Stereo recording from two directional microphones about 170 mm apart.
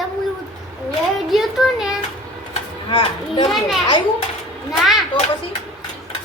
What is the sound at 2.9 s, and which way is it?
Speech, 30° left (ahead or behind).